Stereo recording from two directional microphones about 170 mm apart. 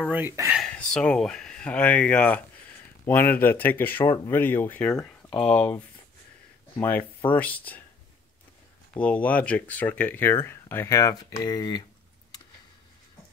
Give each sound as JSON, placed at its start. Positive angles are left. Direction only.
{"t": 0.1, "sound": "speech", "side_deg": -10}
{"t": 0.6, "sound": "speech", "side_deg": 5}
{"t": 6.8, "sound": "speech", "side_deg": 10}
{"t": 8.9, "sound": "speech", "side_deg": 5}